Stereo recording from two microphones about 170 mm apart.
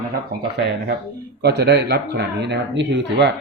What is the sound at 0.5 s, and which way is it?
Speech, 75° right (ahead or behind).